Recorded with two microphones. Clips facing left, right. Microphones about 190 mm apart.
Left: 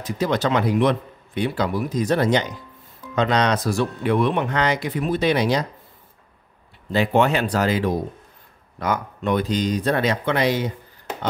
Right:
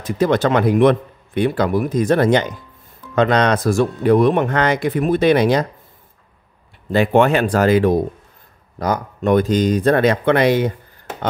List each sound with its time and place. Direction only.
0.0 s speech: 50° right (ahead or behind)
6.9 s speech: 55° right (ahead or behind)
8.7 s speech: 40° right (ahead or behind); by 10.7 s 55° right (ahead or behind)